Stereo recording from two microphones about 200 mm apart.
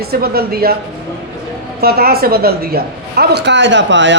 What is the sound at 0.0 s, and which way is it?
Speech, 50° right (ahead or behind).